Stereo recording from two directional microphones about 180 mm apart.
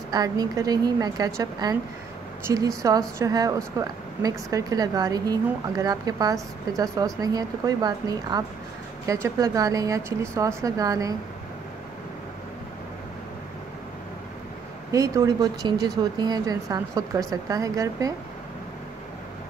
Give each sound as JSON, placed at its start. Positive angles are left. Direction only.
{"t": 0.1, "sound": "a woman's voice", "side_deg": -20}
{"t": 14.9, "sound": "a woman's voice", "side_deg": -20}